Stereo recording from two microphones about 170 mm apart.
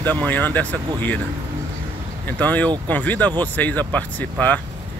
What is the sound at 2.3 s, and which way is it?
Speech, 10° left (ahead or behind).